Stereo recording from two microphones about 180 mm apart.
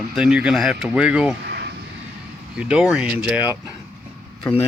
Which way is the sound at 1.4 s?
70° right (ahead or behind).